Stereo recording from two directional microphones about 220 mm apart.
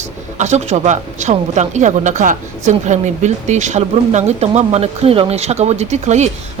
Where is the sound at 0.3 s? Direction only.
30° right (ahead or behind).